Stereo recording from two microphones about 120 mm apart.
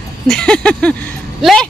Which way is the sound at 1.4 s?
5° left (ahead or behind).